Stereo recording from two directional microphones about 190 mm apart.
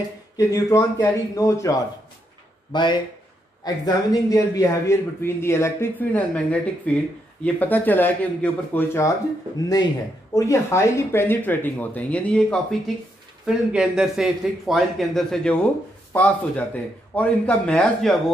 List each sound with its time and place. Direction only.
0.4 s speech: 15° left (ahead or behind)
10.3 s a man's voice: 15° left (ahead or behind)